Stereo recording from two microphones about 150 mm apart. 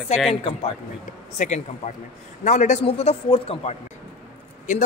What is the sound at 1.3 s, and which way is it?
Speech, 50° left (ahead or behind).